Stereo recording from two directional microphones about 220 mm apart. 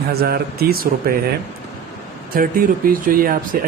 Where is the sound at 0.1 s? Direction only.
45° right (ahead or behind).